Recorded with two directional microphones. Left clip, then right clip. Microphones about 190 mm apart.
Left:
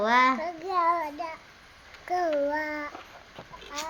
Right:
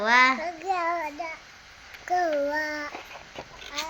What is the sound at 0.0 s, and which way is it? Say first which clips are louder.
Child singing: right 2 dB; 15° left (ahead or behind).